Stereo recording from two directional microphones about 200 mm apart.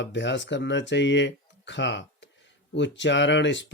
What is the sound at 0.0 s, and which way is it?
Speech, 60° left (ahead or behind).